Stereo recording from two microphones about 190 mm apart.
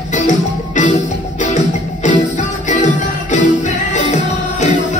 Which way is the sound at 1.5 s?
40° left (ahead or behind).